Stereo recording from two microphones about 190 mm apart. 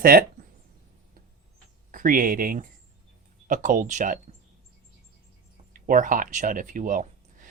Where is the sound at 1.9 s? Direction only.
45° right (ahead or behind).